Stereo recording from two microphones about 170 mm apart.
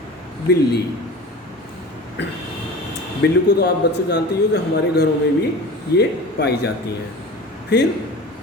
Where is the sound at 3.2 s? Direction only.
80° left.